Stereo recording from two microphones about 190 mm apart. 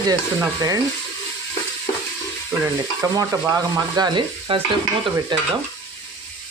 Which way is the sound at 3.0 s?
15° right (ahead or behind).